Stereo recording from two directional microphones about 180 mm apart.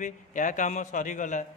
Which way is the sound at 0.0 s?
45° left (ahead or behind).